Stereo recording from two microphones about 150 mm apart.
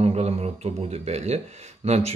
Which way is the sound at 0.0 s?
45° right (ahead or behind).